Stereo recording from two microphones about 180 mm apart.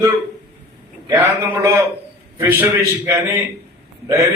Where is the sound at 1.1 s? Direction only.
15° right (ahead or behind).